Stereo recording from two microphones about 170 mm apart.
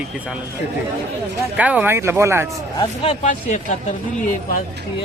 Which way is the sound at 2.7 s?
35° left (ahead or behind).